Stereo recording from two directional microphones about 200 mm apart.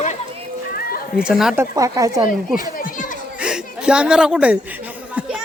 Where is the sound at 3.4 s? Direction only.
5° right (ahead or behind).